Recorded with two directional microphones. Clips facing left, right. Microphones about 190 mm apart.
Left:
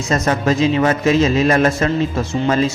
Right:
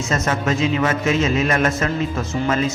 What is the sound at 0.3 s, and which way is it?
A man's voice, 35° left (ahead or behind).